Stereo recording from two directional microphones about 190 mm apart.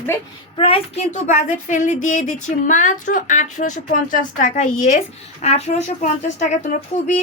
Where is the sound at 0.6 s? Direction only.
30° left (ahead or behind).